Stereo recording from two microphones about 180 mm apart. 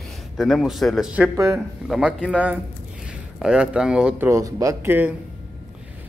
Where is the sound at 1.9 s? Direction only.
Centre (ahead or behind).